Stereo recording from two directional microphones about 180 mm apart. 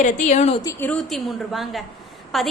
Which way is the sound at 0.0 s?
40° left (ahead or behind).